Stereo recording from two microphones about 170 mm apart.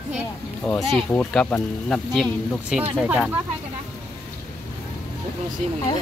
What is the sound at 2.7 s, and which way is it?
Speech, 5° right (ahead or behind).